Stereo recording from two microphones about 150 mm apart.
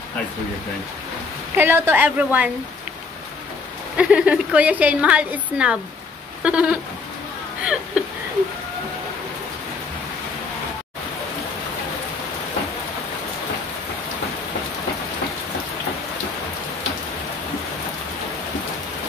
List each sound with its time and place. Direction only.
1.6 s a woman's voice: 15° right (ahead or behind)
3.9 s a woman's voice: 10° right (ahead or behind)